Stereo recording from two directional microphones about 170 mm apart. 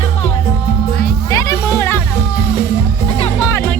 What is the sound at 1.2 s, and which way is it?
Music, 20° left (ahead or behind).